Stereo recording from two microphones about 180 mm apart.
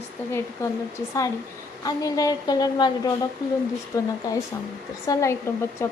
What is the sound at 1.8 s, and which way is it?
A woman's voice, 20° left (ahead or behind).